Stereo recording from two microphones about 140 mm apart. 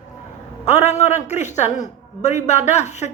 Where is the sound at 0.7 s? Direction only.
50° left (ahead or behind).